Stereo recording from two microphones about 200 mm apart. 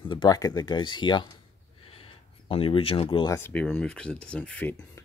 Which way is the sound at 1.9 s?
25° left (ahead or behind).